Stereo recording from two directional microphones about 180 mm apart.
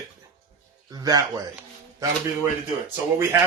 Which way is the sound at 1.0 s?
20° right (ahead or behind).